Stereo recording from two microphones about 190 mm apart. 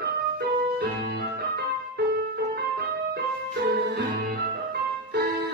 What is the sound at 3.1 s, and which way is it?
Music, 60° right (ahead or behind).